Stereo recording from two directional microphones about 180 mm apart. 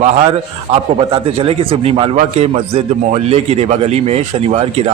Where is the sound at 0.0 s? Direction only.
35° right (ahead or behind).